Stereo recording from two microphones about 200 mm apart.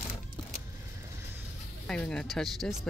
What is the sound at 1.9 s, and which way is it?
Speech, 5° left (ahead or behind).